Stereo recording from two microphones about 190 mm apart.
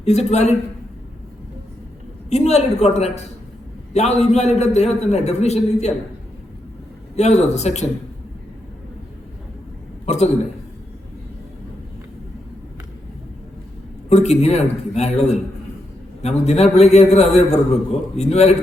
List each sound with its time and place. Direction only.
0.0 s a man's voice: 35° left (ahead or behind)
2.3 s a man's voice: 35° left (ahead or behind)
7.2 s a man's voice: 35° left (ahead or behind)
14.1 s a man's voice: 35° left (ahead or behind)